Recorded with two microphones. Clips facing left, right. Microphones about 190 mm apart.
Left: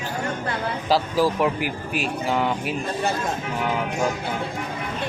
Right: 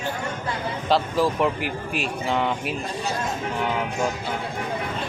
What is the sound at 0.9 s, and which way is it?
Speech, centre (ahead or behind).